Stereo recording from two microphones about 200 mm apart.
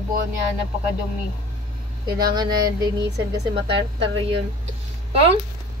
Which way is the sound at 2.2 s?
20° right (ahead or behind).